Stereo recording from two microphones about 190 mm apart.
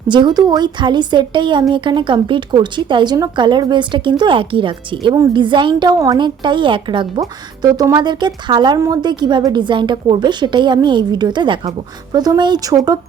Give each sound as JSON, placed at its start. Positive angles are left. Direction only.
{"t": 0.1, "sound": "speech", "side_deg": -25}